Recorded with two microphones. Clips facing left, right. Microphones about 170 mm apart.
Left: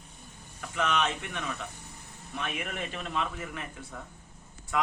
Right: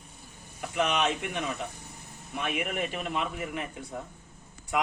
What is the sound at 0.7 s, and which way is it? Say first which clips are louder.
Speech: right 2 dB; 15° right (ahead or behind).